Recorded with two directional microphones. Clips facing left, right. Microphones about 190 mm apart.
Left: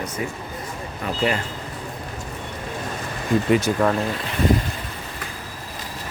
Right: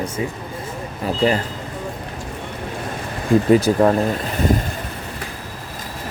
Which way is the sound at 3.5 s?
35° right (ahead or behind).